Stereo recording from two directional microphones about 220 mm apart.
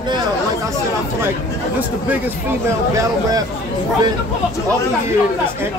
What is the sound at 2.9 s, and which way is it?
Speech, 15° right (ahead or behind).